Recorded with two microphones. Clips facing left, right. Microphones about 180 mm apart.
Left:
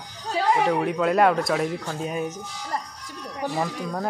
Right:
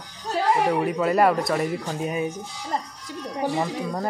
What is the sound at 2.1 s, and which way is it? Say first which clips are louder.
Speech: right 2 dB; 5° right (ahead or behind).